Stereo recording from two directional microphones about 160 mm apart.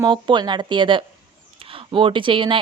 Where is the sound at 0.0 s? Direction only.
30° right (ahead or behind).